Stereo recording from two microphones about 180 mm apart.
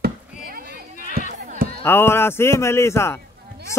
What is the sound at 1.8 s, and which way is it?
Speech, 10° left (ahead or behind).